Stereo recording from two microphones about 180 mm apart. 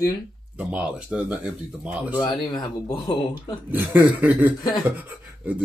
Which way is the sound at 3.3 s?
10° right (ahead or behind).